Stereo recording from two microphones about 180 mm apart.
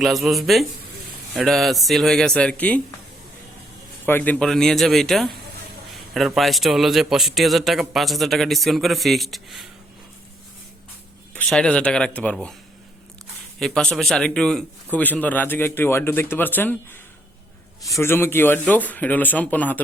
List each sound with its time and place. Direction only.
0.0 s a man's voice: centre (ahead or behind)
4.0 s a man's voice: 10° left (ahead or behind)
11.3 s a man's voice: 5° left (ahead or behind)
13.6 s a man's voice: 5° left (ahead or behind)